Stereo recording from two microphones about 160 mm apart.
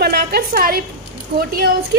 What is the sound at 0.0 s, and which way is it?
A woman's voice, 80° right.